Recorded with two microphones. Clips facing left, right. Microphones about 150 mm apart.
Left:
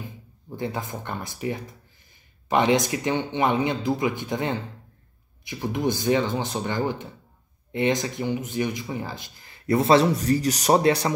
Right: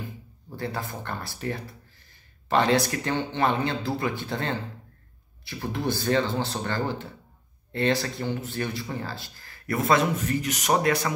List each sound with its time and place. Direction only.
0.6 s speech: 20° left (ahead or behind)